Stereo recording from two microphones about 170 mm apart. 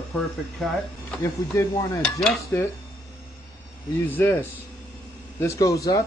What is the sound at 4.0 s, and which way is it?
Speech, 10° left (ahead or behind).